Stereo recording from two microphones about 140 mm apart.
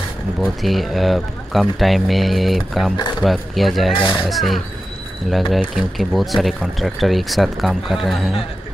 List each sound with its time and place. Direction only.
0.4 s speech: centre (ahead or behind)
3.0 s speech: 30° left (ahead or behind)
3.3 s speech: centre (ahead or behind)
3.9 s speech: 35° left (ahead or behind)
4.3 s speech: centre (ahead or behind)